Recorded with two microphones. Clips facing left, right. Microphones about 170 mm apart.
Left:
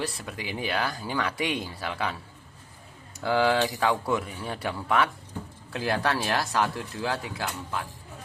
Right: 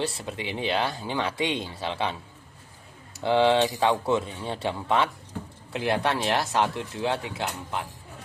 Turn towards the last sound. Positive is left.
turn(degrees=-25)  # may be behind; listen again after turning